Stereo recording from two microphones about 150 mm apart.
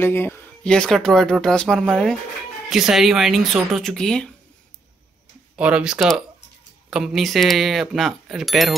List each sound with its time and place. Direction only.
0.0 s speech: 15° left (ahead or behind)
0.7 s speech: 5° left (ahead or behind)
5.6 s speech: 10° right (ahead or behind)